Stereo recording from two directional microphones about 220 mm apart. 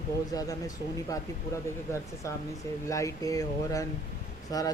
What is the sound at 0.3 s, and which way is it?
Speech, 15° left (ahead or behind).